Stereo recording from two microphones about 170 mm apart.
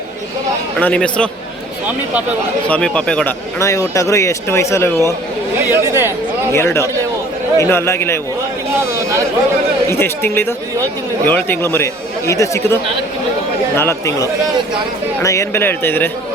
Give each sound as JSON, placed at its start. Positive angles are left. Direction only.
{"t": 0.8, "sound": "speech", "side_deg": 5}
{"t": 2.6, "sound": "speech", "side_deg": 5}
{"t": 3.6, "sound": "speech", "side_deg": 20}
{"t": 5.7, "sound": "speech", "side_deg": -15}
{"t": 6.5, "sound": "speech", "side_deg": 15}
{"t": 9.9, "sound": "speech", "side_deg": 15}